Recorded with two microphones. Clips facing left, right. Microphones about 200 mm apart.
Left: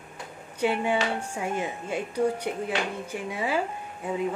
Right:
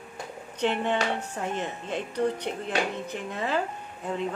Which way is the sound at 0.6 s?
10° left (ahead or behind).